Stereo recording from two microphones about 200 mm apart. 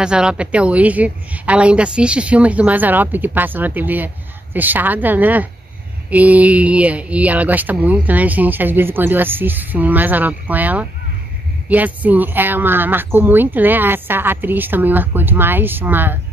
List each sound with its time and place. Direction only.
0.0 s speech: 5° right (ahead or behind)